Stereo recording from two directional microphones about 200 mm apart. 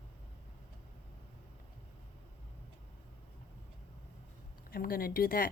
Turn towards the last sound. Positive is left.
turn(degrees=45)  # may be behind; listen again after turning